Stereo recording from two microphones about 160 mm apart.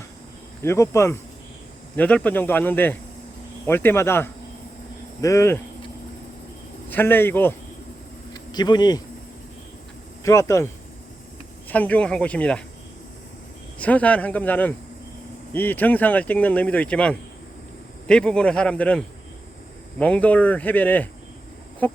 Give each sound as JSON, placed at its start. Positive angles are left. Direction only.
{"t": 0.6, "sound": "speech", "side_deg": 15}
{"t": 6.9, "sound": "speech", "side_deg": 15}
{"t": 8.3, "sound": "insect", "side_deg": 25}
{"t": 10.2, "sound": "speech", "side_deg": 20}
{"t": 11.7, "sound": "speech", "side_deg": 10}
{"t": 13.7, "sound": "speech", "side_deg": 10}